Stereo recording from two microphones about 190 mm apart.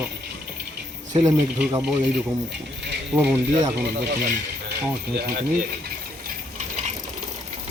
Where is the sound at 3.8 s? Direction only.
60° right (ahead or behind).